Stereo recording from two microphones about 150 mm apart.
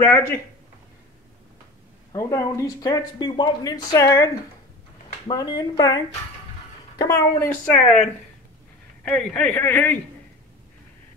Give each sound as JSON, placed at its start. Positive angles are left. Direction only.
{"t": 0.0, "sound": "a man's voice", "side_deg": 15}
{"t": 2.1, "sound": "speech", "side_deg": 20}
{"t": 5.3, "sound": "speech", "side_deg": 25}
{"t": 7.0, "sound": "a man's voice", "side_deg": 15}
{"t": 9.0, "sound": "a man's voice", "side_deg": 5}